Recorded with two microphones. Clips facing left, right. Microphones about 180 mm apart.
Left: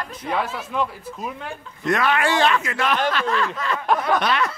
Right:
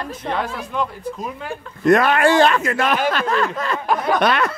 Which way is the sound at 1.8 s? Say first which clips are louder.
Right 6 dB; 45° right (ahead or behind).